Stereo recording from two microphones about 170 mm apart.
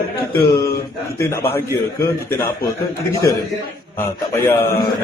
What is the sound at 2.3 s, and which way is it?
Speech, 15° left (ahead or behind).